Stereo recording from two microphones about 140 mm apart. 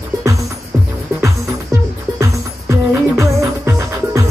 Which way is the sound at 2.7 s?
20° right (ahead or behind).